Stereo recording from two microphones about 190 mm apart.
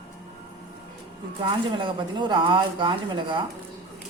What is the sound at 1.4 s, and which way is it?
Speech, 25° right (ahead or behind).